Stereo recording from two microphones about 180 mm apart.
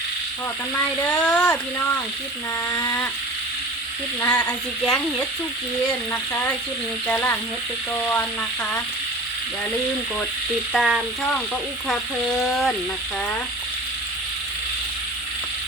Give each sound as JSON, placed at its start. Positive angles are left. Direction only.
{"t": 1.2, "sound": "speech", "side_deg": 5}
{"t": 2.7, "sound": "a sound", "side_deg": 20}
{"t": 4.4, "sound": "speech", "side_deg": 5}
{"t": 7.1, "sound": "speech", "side_deg": 10}
{"t": 10.7, "sound": "speech", "side_deg": 0}